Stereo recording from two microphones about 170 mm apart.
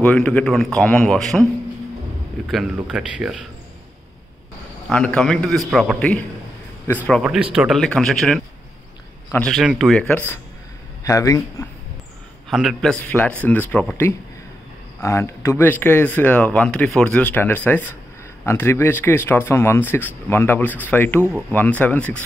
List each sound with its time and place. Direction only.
0.0 s a man's voice: 10° left (ahead or behind)
2.5 s a man's voice: 5° right (ahead or behind)
4.8 s a man's voice: 5° left (ahead or behind)
7.2 s a man's voice: 5° right (ahead or behind)
10.0 s speech: 10° left (ahead or behind)
12.4 s speech: centre (ahead or behind)